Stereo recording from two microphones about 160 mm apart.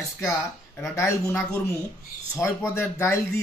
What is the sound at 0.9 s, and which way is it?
Speech, 20° left (ahead or behind).